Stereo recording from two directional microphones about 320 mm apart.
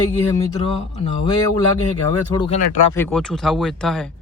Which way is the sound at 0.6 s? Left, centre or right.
Centre.